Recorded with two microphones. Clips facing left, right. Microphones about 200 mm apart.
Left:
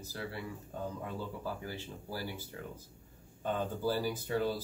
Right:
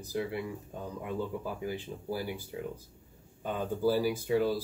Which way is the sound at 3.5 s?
10° right (ahead or behind).